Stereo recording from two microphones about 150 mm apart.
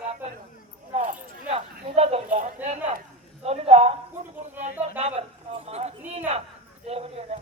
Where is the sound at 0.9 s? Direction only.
50° right (ahead or behind).